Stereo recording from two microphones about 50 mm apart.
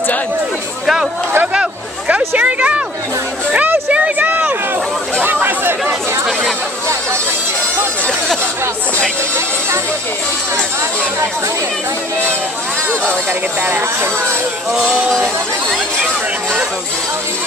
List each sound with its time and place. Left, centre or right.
2.0 s speech: right
3.9 s a sound: right
5.2 s chatter: right
13.0 s speech: right
14.7 s music: centre